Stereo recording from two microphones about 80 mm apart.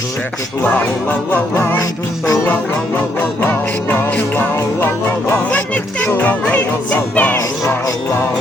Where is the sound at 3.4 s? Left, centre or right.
Left.